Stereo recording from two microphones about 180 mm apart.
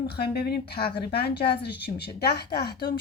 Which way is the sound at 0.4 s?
60° left (ahead or behind).